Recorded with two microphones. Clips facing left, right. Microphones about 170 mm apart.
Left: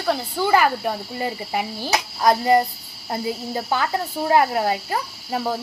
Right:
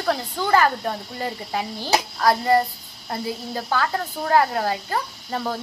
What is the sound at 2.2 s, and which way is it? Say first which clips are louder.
A child's voice: left 3 dB; 20° left (ahead or behind).